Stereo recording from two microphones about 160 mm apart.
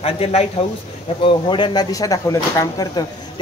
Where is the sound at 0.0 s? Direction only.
40° left (ahead or behind).